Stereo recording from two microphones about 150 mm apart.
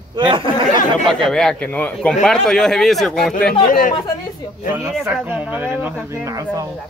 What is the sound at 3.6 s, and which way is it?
Speech, 65° left (ahead or behind).